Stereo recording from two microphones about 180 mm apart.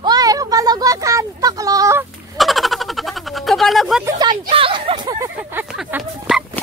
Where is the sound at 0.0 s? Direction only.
20° right (ahead or behind).